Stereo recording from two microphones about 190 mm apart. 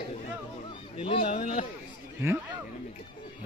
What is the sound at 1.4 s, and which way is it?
Speech, 45° left (ahead or behind).